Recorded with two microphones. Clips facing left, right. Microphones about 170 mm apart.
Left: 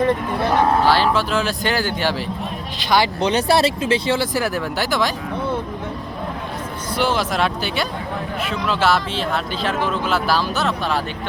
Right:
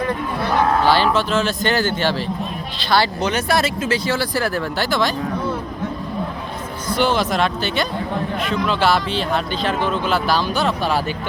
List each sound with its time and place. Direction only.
0.9 s speech: centre (ahead or behind)
3.2 s speech: 30° left (ahead or behind); by 5.1 s 10° left (ahead or behind)
6.9 s speech: 5° left (ahead or behind)